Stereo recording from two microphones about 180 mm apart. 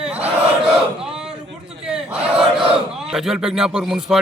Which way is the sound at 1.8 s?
5° right (ahead or behind).